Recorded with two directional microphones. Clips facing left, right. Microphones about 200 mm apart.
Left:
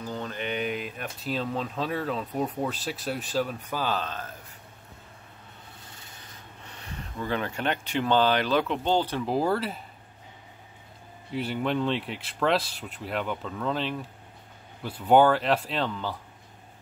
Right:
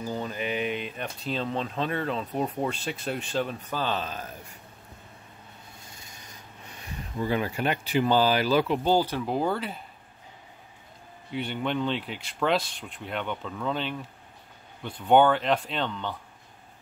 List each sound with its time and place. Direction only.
0.0 s speech: 10° right (ahead or behind); by 4.0 s 5° left (ahead or behind)
4.0 s speech: 10° right (ahead or behind)
5.9 s rub: 10° right (ahead or behind)
6.7 s speech: 10° right (ahead or behind)
9.3 s speech: centre (ahead or behind)
11.3 s speech: centre (ahead or behind)